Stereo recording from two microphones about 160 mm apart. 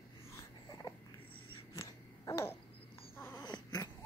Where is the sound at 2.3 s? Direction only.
15° left (ahead or behind).